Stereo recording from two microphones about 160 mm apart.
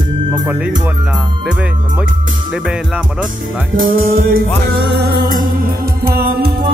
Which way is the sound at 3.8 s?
65° right (ahead or behind).